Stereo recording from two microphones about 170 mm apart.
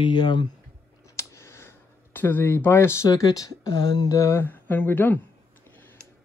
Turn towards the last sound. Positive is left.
turn(degrees=10)  # may be behind; listen again after turning